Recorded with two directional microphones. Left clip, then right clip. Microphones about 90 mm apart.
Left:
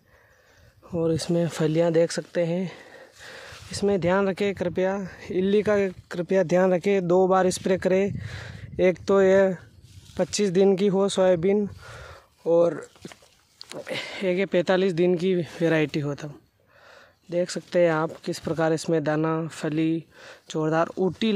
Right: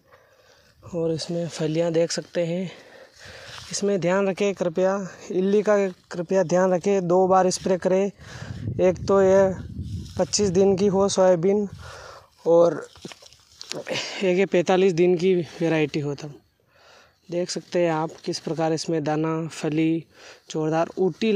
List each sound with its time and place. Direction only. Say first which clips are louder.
0.9 s speech: left 1 dB; 60° left (ahead or behind)
1.6 s speech: even; 30° left (ahead or behind)
2.3 s speech: even; 10° left (ahead or behind)
6.0 s speech: right 1 dB; 40° left (ahead or behind)
11.9 s a sound: right 2 dB; 20° left (ahead or behind)
12.4 s speech: right 3 dB; centre (ahead or behind)
13.8 s speech: right 3 dB; 35° right (ahead or behind)
14.1 s speech: right 4 dB; 20° right (ahead or behind)
14.5 s speech: right 3 dB; centre (ahead or behind)
15.4 s speech: even; 25° left (ahead or behind)
17.3 s speech: left 1 dB; 20° left (ahead or behind)
18.9 s speech: left 1 dB; 20° left (ahead or behind)
20.2 s speech: even; 25° left (ahead or behind)